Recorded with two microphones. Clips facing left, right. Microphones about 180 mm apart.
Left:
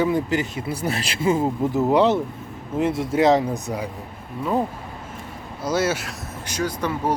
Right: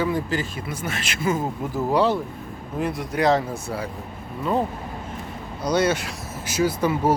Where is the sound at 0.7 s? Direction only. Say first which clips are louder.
Left 5 dB; 35° left (ahead or behind); by 3.9 s 15° left (ahead or behind).